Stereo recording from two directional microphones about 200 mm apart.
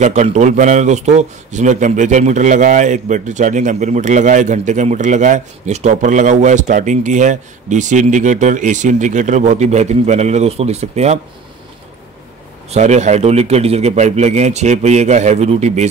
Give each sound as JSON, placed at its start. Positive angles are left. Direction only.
{"t": 0.0, "sound": "a man's voice", "side_deg": -35}
{"t": 12.6, "sound": "a man's voice", "side_deg": -35}